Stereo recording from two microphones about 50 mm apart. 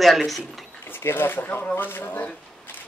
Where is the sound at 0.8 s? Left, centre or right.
Left.